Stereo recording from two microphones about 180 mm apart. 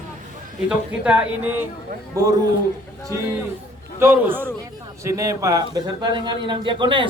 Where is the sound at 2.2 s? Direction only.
20° right (ahead or behind).